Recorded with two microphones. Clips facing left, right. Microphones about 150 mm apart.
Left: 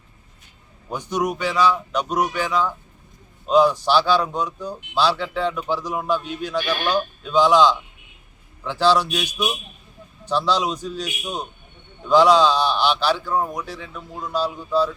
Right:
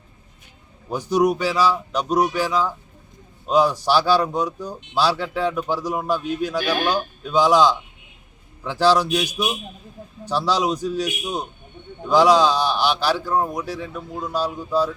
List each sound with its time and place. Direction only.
0.9 s speech: 10° right (ahead or behind)
2.0 s speech: 35° right (ahead or behind)
3.4 s speech: 10° right (ahead or behind)